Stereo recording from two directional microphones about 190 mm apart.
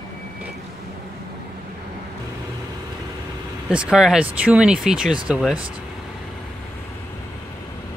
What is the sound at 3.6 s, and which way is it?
Speech, 5° right (ahead or behind).